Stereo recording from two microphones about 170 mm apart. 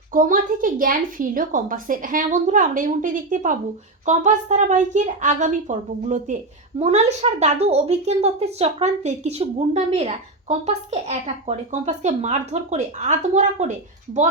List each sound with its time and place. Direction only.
0.1 s a woman's voice: 55° right (ahead or behind)